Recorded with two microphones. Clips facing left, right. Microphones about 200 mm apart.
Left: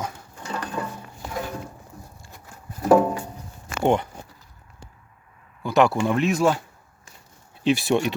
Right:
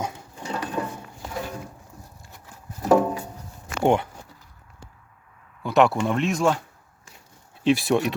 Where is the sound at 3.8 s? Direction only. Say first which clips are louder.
Even; 10° right (ahead or behind).